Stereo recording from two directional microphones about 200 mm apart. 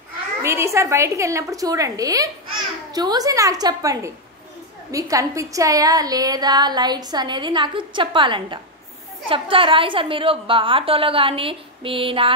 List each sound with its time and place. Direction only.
0.4 s a woman's voice: 15° right (ahead or behind)